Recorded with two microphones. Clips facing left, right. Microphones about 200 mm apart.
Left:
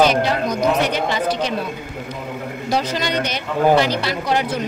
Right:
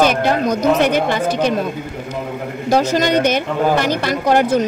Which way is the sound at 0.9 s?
50° right (ahead or behind).